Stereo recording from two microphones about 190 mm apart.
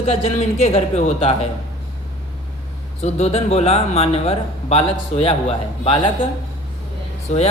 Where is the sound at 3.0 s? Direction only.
35° left (ahead or behind).